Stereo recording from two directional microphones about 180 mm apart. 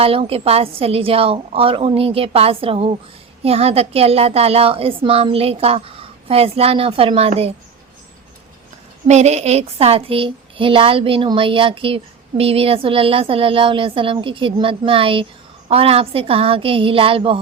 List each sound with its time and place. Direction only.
0.0 s a woman's voice: 30° right (ahead or behind)
9.0 s a woman's voice: 40° right (ahead or behind)